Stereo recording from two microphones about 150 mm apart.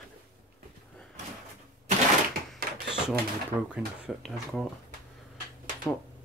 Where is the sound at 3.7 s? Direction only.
Centre (ahead or behind).